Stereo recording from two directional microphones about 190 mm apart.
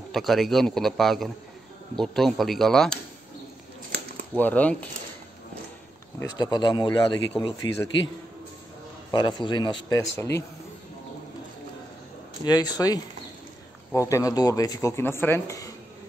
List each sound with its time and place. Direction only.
0.1 s a man's voice: centre (ahead or behind)
4.4 s speech: 10° left (ahead or behind)
6.3 s speech: 20° left (ahead or behind)
9.1 s speech: 25° left (ahead or behind)
12.4 s speech: 20° left (ahead or behind)